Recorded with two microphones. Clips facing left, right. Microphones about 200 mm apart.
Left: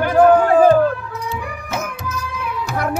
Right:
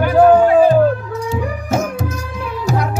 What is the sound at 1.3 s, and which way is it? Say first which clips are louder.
Music: right 9 dB; 45° right (ahead or behind).